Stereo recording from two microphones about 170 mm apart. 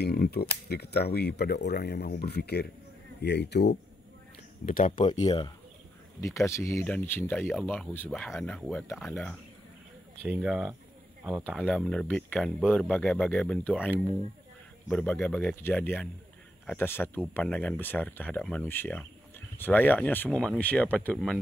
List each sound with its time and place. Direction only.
0.0 s speech: 65° left (ahead or behind)
4.6 s speech: 50° left (ahead or behind)
4.9 s speech: 30° left (ahead or behind); by 13.7 s 10° left (ahead or behind)
14.9 s speech: 5° left (ahead or behind)